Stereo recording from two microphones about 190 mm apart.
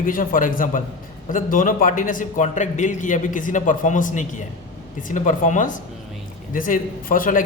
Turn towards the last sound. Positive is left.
turn(degrees=45)  # may be behind; listen again after turning